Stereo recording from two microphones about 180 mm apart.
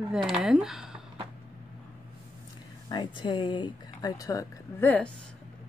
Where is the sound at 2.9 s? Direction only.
25° left (ahead or behind); by 5.1 s 10° left (ahead or behind).